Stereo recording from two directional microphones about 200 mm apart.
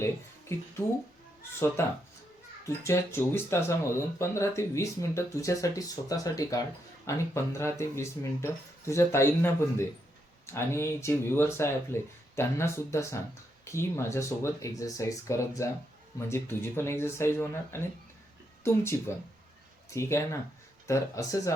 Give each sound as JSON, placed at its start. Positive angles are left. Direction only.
{"t": 1.8, "sound": "speech", "side_deg": 15}